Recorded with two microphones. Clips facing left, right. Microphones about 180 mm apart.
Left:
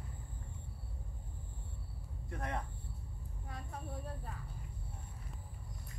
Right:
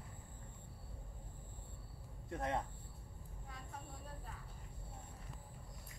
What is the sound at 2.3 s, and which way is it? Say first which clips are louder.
Speech: right 2 dB; 25° right (ahead or behind).